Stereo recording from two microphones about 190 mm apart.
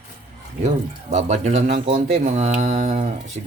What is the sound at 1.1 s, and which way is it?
Speech, 35° right (ahead or behind).